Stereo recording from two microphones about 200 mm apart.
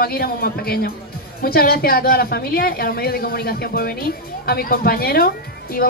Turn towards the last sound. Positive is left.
turn(degrees=50)  # may be behind; listen again after turning